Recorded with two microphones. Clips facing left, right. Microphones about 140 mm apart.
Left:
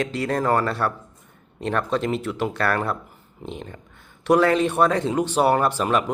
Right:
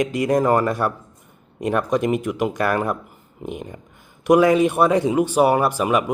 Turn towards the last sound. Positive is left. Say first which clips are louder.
# right 2 dB
turn(degrees=-10)  # may be behind; listen again after turning